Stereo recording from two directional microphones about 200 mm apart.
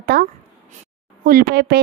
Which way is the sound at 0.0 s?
50° right (ahead or behind).